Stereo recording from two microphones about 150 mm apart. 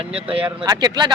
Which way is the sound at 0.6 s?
25° right (ahead or behind).